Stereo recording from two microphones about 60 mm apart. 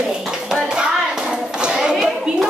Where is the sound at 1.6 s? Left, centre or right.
Centre.